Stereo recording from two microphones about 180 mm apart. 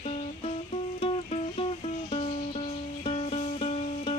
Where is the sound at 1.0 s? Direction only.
30° left (ahead or behind).